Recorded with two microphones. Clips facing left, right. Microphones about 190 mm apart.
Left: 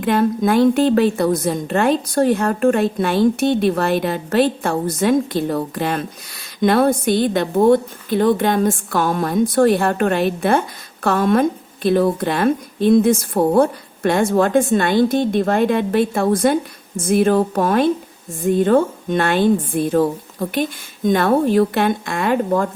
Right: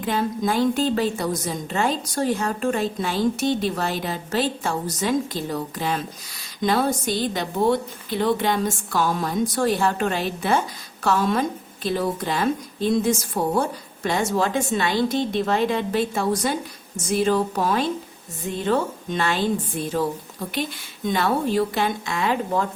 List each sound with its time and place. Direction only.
0.0 s a woman's voice: 60° left (ahead or behind)